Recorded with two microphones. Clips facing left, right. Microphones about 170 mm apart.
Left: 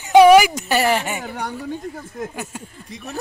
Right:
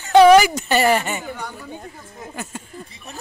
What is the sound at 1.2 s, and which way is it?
Speech, 75° left (ahead or behind).